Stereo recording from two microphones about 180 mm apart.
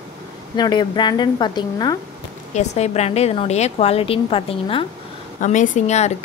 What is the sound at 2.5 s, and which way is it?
A woman's voice, 40° left (ahead or behind).